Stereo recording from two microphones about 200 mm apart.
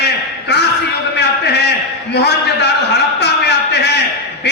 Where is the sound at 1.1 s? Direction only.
55° left (ahead or behind).